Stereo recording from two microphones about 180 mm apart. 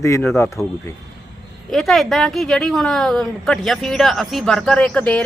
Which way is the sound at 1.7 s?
Centre (ahead or behind).